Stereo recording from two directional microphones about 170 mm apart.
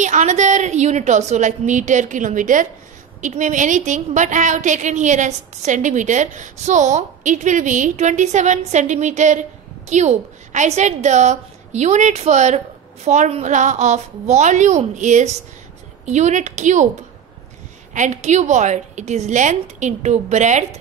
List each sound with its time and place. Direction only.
0.0 s a woman's voice: 45° right (ahead or behind)
17.9 s a woman's voice: 45° right (ahead or behind)